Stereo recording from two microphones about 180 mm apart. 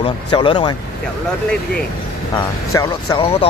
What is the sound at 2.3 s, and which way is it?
Speech, 20° left (ahead or behind).